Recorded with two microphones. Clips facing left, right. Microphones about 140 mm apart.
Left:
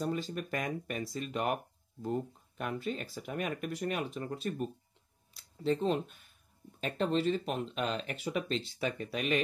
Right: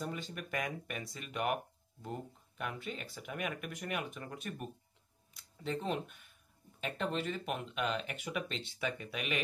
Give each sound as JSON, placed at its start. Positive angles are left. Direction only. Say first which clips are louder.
{"t": 0.0, "sound": "speech", "louder": "left 7 dB", "side_deg": 35}